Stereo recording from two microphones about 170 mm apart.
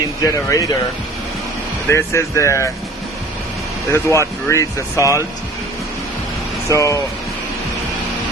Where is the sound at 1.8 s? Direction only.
15° left (ahead or behind).